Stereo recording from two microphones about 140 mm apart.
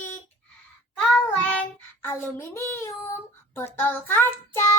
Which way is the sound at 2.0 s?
20° left (ahead or behind).